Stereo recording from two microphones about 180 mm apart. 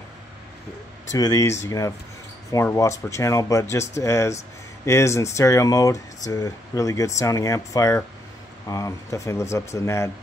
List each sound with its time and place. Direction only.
1.1 s speech: 20° left (ahead or behind)